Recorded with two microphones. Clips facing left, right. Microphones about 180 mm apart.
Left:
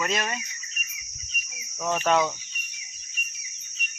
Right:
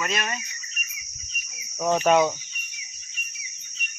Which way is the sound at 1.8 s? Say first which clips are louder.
Right 4 dB; 15° right (ahead or behind).